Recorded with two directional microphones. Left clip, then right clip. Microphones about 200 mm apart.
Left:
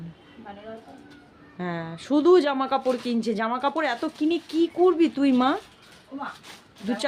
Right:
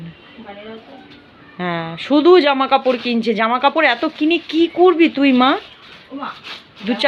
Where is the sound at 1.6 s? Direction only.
10° left (ahead or behind).